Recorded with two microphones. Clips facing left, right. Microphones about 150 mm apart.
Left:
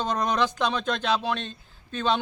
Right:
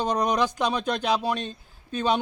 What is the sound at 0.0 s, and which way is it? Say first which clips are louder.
A man's voice: right 2 dB; 10° right (ahead or behind).